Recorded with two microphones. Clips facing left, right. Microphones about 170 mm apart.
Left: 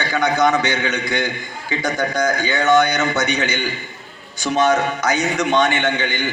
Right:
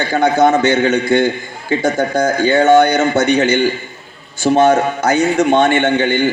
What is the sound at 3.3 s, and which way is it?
A man's voice, 50° right (ahead or behind).